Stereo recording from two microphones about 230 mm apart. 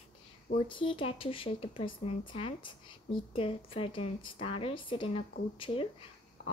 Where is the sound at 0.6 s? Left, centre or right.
Left.